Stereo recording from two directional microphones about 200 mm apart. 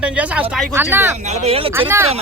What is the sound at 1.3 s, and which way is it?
Speech, 35° right (ahead or behind).